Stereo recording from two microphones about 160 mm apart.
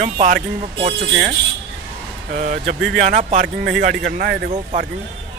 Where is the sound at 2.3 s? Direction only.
55° right (ahead or behind).